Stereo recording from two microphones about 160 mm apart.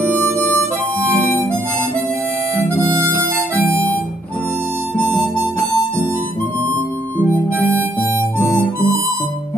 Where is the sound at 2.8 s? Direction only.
15° right (ahead or behind).